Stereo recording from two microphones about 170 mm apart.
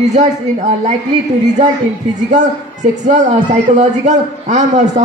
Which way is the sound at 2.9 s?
45° right (ahead or behind).